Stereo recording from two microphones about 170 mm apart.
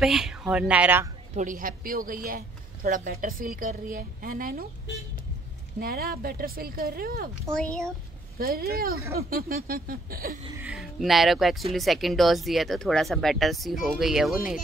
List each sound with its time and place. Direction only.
0.0 s speech: 5° right (ahead or behind)
1.3 s speech: 50° right (ahead or behind)
5.8 s speech: 65° right (ahead or behind)
7.5 s speech: 5° left (ahead or behind)
8.4 s speech: 65° right (ahead or behind)
10.6 s speech: centre (ahead or behind)